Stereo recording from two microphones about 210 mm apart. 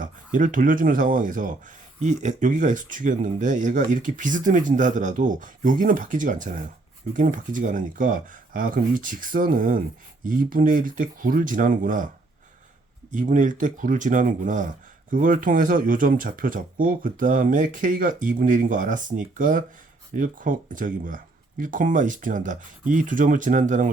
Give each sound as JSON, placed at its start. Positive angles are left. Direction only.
{"t": 0.0, "sound": "speech", "side_deg": -40}
{"t": 13.1, "sound": "speech", "side_deg": -40}